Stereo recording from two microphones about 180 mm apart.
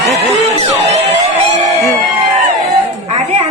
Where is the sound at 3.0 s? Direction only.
35° right (ahead or behind).